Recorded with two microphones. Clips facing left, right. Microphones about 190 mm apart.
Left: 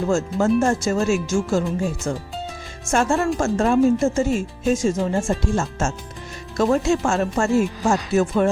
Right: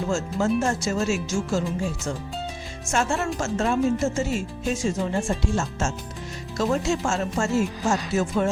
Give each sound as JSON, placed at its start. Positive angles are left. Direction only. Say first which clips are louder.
{"t": 0.1, "sound": "speech", "louder": "left 5 dB", "side_deg": 55}
{"t": 2.9, "sound": "speech", "louder": "left 5 dB", "side_deg": 50}
{"t": 6.6, "sound": "speech", "louder": "left 5 dB", "side_deg": 60}